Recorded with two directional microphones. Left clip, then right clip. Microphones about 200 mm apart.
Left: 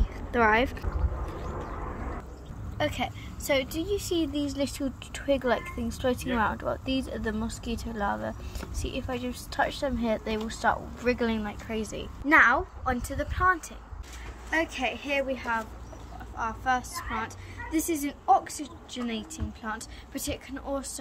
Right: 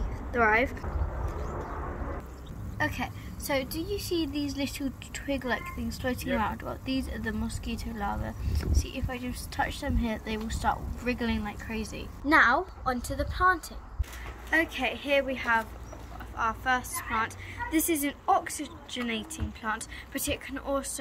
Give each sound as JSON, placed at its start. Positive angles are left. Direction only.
{"t": 2.8, "sound": "speech", "side_deg": 25}
{"t": 12.3, "sound": "a woman's voice", "side_deg": 5}